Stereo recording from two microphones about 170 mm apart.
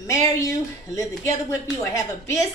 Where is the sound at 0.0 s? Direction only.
20° left (ahead or behind).